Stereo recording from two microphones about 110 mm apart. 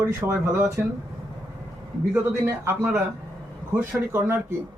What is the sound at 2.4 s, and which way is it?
Speech, 20° right (ahead or behind).